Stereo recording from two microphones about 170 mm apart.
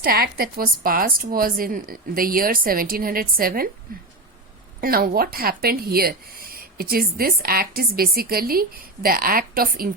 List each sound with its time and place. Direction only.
0.0 s speech: 60° right (ahead or behind)